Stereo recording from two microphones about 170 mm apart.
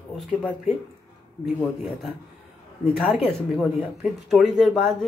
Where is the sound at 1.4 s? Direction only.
5° right (ahead or behind).